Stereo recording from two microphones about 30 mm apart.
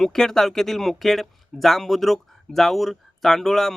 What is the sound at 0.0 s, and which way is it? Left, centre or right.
Speech, centre.